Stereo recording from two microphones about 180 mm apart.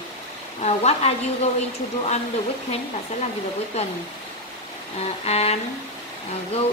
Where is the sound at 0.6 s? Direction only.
35° left (ahead or behind).